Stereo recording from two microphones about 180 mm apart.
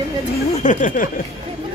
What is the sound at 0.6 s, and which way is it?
Speech, 45° left (ahead or behind).